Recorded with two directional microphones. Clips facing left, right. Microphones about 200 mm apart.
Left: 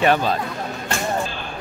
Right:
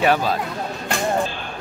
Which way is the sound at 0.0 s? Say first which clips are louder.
Left 1 dB; 5° right (ahead or behind).